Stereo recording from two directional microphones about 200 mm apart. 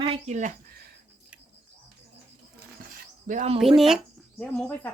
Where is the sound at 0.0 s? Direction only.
30° right (ahead or behind).